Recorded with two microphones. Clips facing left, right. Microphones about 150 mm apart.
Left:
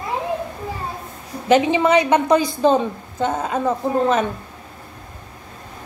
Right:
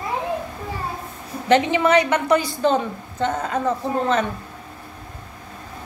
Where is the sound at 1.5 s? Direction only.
15° left (ahead or behind).